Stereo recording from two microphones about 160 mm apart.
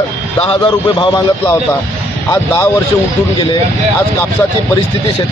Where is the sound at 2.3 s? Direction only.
15° left (ahead or behind).